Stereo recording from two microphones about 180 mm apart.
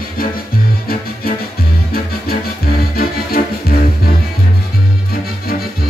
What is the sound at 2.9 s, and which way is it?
Music, 55° left (ahead or behind).